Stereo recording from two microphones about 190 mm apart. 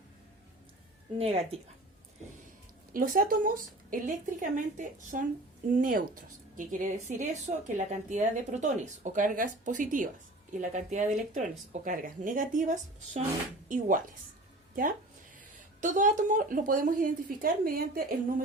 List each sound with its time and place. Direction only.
1.2 s speech: 30° right (ahead or behind)
2.9 s speech: 45° right (ahead or behind)
15.8 s speech: 40° right (ahead or behind)